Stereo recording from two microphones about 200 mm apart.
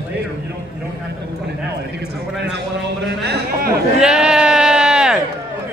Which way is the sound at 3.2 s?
55° right (ahead or behind).